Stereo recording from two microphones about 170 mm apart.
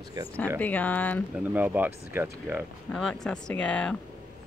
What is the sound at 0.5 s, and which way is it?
Speech, 10° left (ahead or behind).